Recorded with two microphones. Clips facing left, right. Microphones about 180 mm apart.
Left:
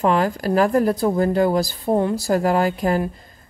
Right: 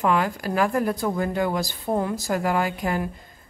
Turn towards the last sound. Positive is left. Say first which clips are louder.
# left 5 dB
turn(degrees=35)  # may be behind; listen again after turning